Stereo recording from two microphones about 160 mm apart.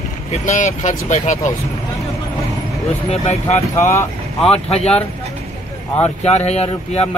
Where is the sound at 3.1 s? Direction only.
40° left (ahead or behind).